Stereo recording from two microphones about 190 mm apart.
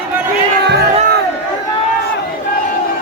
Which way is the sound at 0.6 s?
60° right (ahead or behind).